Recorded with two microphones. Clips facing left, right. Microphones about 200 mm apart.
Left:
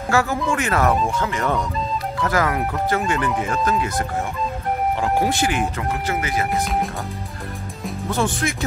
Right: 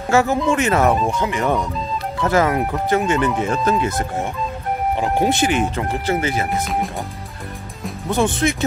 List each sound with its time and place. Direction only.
0.1 s speech: 20° right (ahead or behind)
5.0 s speech: 20° right (ahead or behind)
8.1 s speech: 20° right (ahead or behind)